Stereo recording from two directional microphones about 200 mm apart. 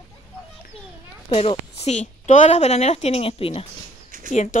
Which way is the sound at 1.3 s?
30° left (ahead or behind).